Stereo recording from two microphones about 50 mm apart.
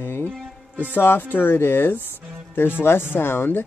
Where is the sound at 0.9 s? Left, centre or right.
Left.